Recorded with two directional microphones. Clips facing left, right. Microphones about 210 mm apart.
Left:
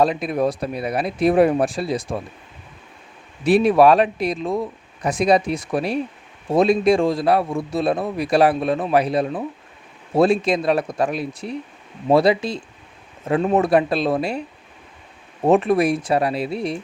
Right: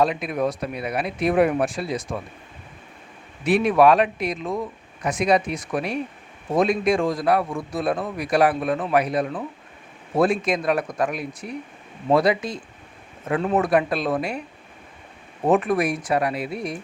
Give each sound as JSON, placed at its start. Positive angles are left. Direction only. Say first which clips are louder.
{"t": 0.0, "sound": "speech", "louder": "left 3 dB", "side_deg": 35}
{"t": 3.4, "sound": "a man's voice", "louder": "left 3 dB", "side_deg": 35}
{"t": 15.4, "sound": "a man's voice", "louder": "left 4 dB", "side_deg": 25}